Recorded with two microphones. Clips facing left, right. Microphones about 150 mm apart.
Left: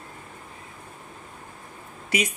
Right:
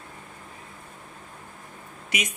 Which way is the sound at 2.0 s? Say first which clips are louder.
Left 5 dB; 30° left (ahead or behind).